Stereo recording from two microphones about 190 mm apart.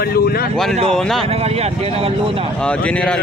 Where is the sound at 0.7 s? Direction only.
35° right (ahead or behind).